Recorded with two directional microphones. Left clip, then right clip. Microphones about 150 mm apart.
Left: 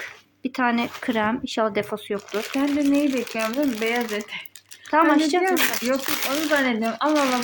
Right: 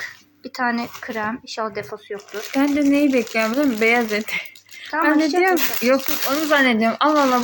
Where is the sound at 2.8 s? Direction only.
30° right (ahead or behind).